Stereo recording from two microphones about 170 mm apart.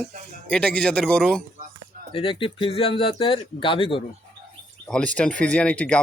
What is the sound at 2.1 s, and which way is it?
Speech, 30° left (ahead or behind).